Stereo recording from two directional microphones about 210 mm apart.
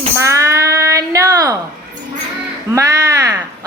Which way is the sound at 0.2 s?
15° right (ahead or behind).